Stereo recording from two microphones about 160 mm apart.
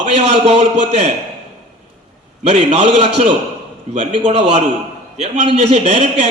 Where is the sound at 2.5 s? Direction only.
40° right (ahead or behind).